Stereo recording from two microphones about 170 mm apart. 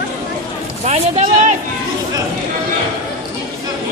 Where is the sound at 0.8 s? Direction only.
40° right (ahead or behind).